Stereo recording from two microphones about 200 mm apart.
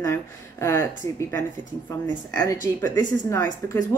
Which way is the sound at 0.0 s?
15° left (ahead or behind).